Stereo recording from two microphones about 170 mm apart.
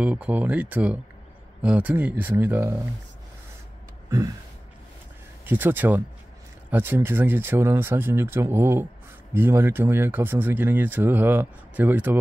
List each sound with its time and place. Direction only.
0.0 s speech: 10° right (ahead or behind)
5.4 s speech: 10° right (ahead or behind)